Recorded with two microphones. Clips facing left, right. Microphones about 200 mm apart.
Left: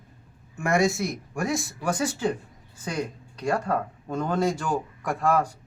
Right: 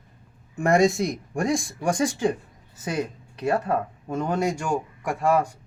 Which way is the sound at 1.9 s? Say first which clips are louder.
Right 3 dB; 10° right (ahead or behind).